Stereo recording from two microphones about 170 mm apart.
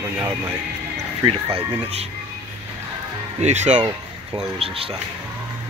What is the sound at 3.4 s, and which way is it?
Speech, 40° right (ahead or behind).